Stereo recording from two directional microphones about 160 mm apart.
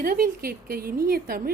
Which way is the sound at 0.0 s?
65° right (ahead or behind).